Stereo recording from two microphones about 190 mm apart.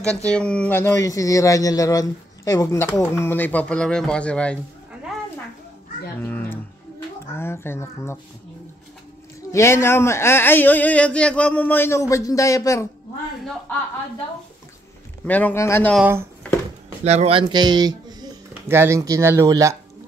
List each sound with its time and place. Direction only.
0.0 s speech: 5° left (ahead or behind)
6.1 s a sound: 10° left (ahead or behind)
7.3 s speech: 10° left (ahead or behind)
9.5 s speech: 15° left (ahead or behind)
15.2 s speech: 10° left (ahead or behind)
16.0 s speech: 10° right (ahead or behind)
17.0 s speech: 35° right (ahead or behind); by 19.8 s 15° right (ahead or behind)